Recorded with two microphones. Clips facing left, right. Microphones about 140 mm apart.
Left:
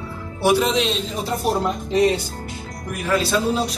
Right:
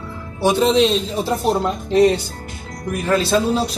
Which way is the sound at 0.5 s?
35° right (ahead or behind).